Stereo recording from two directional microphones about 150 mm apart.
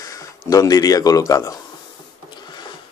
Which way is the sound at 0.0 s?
25° left (ahead or behind).